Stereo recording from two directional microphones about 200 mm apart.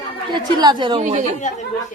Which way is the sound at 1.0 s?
35° right (ahead or behind).